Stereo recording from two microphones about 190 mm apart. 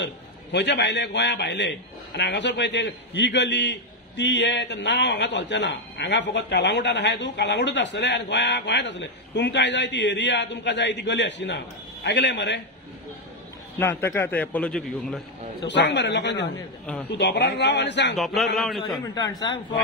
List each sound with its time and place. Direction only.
0.0 s a man's voice: 65° left (ahead or behind)
13.7 s a man's voice: 10° left (ahead or behind)
15.6 s a man's voice: 65° left (ahead or behind)
16.8 s a man's voice: 10° left (ahead or behind)
17.1 s a man's voice: 65° left (ahead or behind)
18.1 s a man's voice: centre (ahead or behind)
19.1 s speech: 20° left (ahead or behind)